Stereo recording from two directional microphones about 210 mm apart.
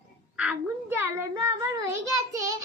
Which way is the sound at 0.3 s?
10° right (ahead or behind).